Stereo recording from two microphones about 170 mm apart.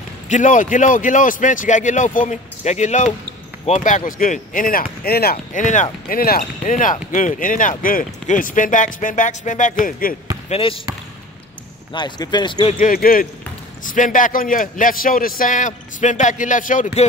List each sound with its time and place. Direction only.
0.3 s speech: 50° left (ahead or behind)
10.5 s speech: 35° left (ahead or behind)
11.9 s speech: 25° left (ahead or behind)
12.7 s speech: 55° left (ahead or behind)